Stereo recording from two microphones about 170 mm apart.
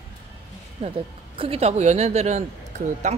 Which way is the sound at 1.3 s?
35° right (ahead or behind).